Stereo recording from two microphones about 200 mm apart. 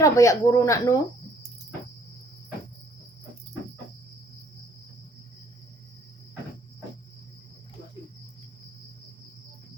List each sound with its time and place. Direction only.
0.0 s speech: 15° left (ahead or behind)